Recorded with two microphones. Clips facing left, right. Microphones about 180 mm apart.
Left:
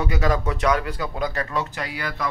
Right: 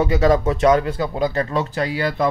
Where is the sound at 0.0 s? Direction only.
25° right (ahead or behind).